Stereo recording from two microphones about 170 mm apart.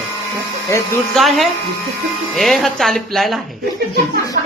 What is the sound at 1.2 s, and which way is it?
A woman's voice, centre (ahead or behind).